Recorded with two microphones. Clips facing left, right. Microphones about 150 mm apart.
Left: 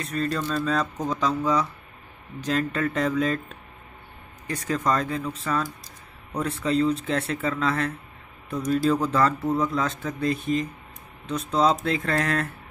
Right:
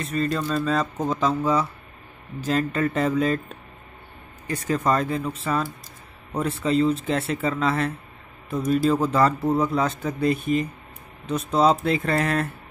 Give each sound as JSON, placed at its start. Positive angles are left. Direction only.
{"t": 0.0, "sound": "speech", "side_deg": 0}
{"t": 0.9, "sound": "speech", "side_deg": -25}
{"t": 1.2, "sound": "speech", "side_deg": -5}
{"t": 4.5, "sound": "a man's voice", "side_deg": -5}
{"t": 9.4, "sound": "speech", "side_deg": -30}
{"t": 9.7, "sound": "a man's voice", "side_deg": -10}